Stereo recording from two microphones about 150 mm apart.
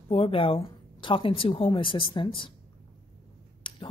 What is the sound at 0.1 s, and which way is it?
Speech, 40° left (ahead or behind).